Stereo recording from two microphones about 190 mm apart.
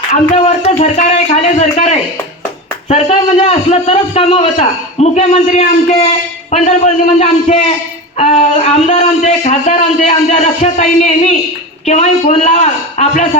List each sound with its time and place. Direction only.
0.1 s a man's voice: 35° left (ahead or behind)